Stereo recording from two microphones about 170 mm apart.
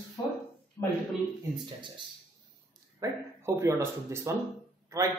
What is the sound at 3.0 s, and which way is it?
Speech, 15° right (ahead or behind).